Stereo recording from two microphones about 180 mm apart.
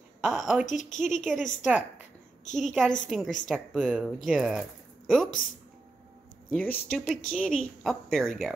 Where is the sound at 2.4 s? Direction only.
40° left (ahead or behind).